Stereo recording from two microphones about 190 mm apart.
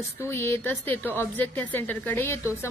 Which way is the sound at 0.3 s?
15° left (ahead or behind).